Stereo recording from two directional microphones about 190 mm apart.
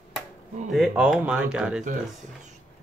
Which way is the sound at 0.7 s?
Centre (ahead or behind).